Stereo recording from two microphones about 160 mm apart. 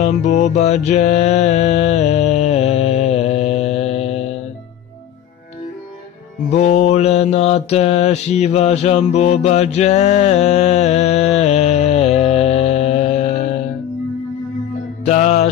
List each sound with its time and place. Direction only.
0.0 s mantra: 45° left (ahead or behind)
6.5 s mantra: 45° left (ahead or behind)
15.0 s music: 45° left (ahead or behind)